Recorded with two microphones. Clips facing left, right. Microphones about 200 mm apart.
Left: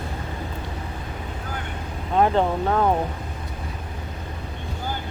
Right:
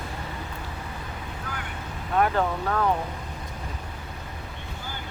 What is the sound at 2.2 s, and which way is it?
Speech, 25° left (ahead or behind).